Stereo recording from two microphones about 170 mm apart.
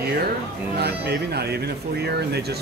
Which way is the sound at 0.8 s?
70° right (ahead or behind).